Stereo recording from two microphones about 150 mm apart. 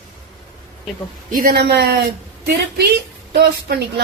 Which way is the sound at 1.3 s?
80° right.